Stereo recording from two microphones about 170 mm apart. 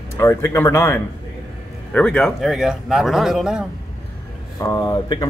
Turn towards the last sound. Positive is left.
turn(degrees=20)  # may be behind; listen again after turning